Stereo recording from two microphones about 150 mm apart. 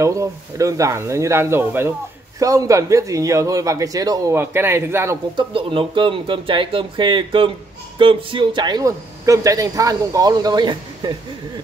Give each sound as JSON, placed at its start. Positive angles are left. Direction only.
{"t": 0.0, "sound": "speech", "side_deg": -20}
{"t": 5.3, "sound": "speech", "side_deg": -35}